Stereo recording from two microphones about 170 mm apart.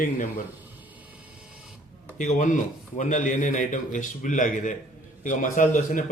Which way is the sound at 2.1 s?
45° left (ahead or behind).